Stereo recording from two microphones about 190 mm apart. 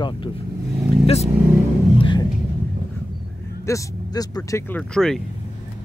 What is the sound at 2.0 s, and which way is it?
Music, 25° left (ahead or behind).